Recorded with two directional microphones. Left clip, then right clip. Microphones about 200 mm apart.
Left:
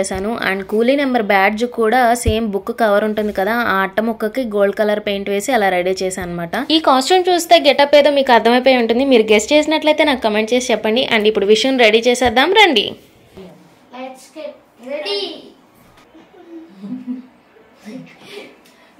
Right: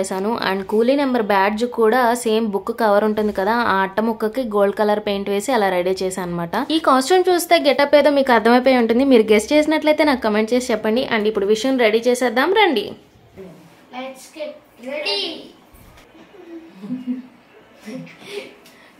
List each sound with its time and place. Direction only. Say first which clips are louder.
0.0 s speech: left 2 dB; centre (ahead or behind)